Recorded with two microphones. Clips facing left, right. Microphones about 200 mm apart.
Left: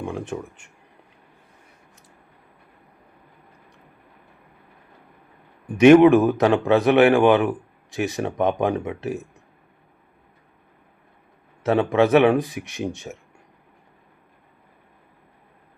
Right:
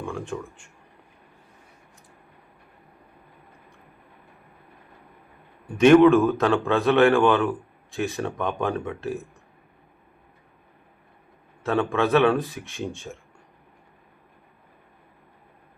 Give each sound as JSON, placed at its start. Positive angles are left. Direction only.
{"t": 0.0, "sound": "speech", "side_deg": 20}
{"t": 5.6, "sound": "a man's voice", "side_deg": 15}
{"t": 11.6, "sound": "speech", "side_deg": 20}